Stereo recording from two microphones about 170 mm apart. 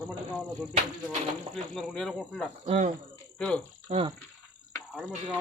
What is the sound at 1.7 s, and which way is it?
Speech, 5° left (ahead or behind).